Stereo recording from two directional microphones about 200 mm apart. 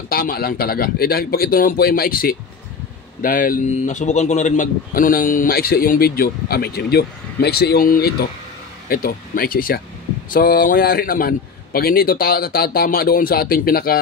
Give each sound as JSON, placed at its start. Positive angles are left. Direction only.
{"t": 0.1, "sound": "a man's voice", "side_deg": 50}